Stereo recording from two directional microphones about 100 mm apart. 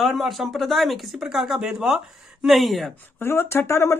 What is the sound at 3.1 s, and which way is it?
Speech, 25° left (ahead or behind).